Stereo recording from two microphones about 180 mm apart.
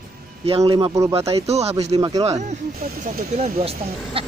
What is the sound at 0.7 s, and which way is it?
Speech, 25° right (ahead or behind).